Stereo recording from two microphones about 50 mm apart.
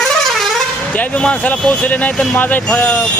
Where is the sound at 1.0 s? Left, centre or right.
Left.